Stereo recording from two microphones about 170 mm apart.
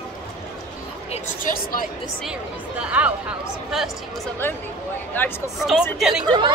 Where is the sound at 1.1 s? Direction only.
50° left (ahead or behind).